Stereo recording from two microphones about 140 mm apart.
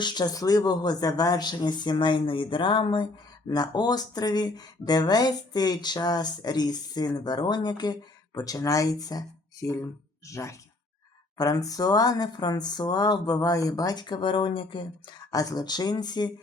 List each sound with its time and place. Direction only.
0.0 s speech: 30° left (ahead or behind)